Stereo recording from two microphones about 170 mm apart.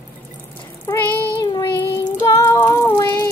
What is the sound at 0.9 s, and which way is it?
Child singing, 20° left (ahead or behind).